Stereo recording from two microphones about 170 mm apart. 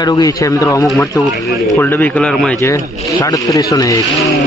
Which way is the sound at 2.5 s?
20° left (ahead or behind).